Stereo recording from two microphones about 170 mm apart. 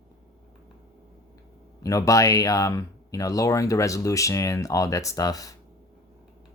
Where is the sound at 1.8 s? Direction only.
20° left (ahead or behind).